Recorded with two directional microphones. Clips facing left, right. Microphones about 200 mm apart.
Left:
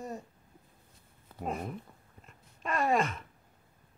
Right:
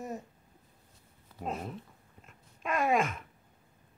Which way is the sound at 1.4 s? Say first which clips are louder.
Left 1 dB; 10° left (ahead or behind).